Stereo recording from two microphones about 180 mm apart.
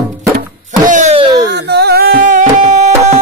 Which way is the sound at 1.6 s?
65° right (ahead or behind).